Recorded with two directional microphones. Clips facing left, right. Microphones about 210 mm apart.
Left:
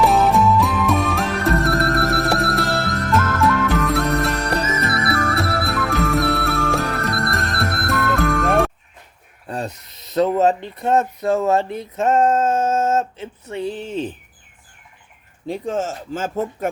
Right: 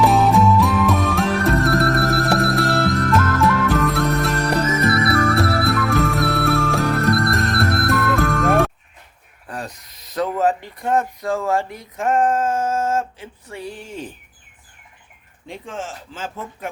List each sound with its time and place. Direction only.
0.0 s music: centre (ahead or behind)
9.5 s a sound: 25° left (ahead or behind)
10.2 s speech: 25° left (ahead or behind)
15.4 s speech: 40° left (ahead or behind)